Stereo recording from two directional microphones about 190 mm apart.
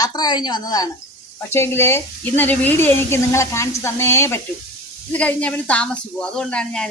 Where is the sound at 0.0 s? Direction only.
20° left (ahead or behind).